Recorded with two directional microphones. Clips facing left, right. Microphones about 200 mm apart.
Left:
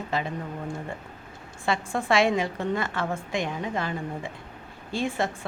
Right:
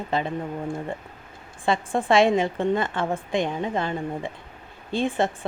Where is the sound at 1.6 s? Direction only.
30° right (ahead or behind).